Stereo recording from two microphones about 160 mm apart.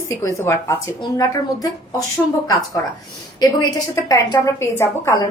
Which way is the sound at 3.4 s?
25° left (ahead or behind).